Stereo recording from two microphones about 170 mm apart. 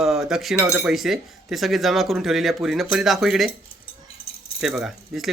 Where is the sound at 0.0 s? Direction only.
5° right (ahead or behind).